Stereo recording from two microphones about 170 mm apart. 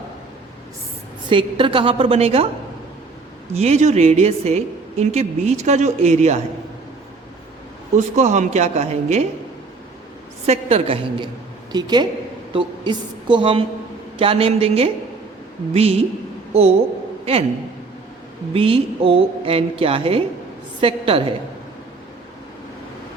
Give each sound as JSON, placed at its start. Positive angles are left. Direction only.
{"t": 1.3, "sound": "a woman's voice", "side_deg": -30}
{"t": 3.5, "sound": "a woman's voice", "side_deg": -40}
{"t": 7.9, "sound": "a woman's voice", "side_deg": -45}
{"t": 10.4, "sound": "a woman's voice", "side_deg": -40}
{"t": 18.5, "sound": "a woman's voice", "side_deg": -35}